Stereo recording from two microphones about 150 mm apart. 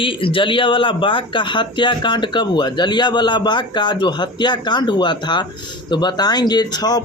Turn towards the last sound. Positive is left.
turn(degrees=25)  # may be behind; listen again after turning